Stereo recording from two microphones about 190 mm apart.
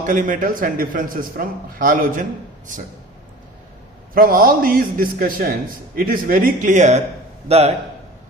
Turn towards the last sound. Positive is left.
turn(degrees=-35)  # may be behind; listen again after turning